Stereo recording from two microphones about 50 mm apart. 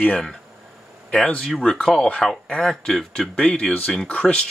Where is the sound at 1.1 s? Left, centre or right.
Centre.